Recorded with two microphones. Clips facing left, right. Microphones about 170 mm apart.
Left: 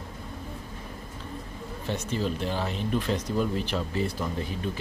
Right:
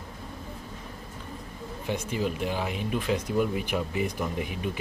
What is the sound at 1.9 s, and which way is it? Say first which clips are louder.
Speech: even; 10° right (ahead or behind).